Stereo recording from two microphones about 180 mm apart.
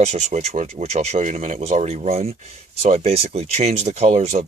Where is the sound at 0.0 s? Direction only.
40° right (ahead or behind).